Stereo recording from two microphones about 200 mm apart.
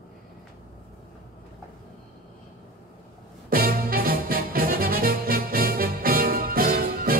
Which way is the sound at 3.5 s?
50° right (ahead or behind).